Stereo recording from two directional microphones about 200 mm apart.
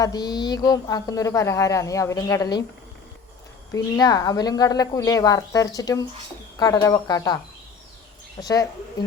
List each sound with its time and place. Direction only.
0.0 s speech: 20° left (ahead or behind)
3.7 s speech: 15° left (ahead or behind)
8.4 s speech: 20° left (ahead or behind)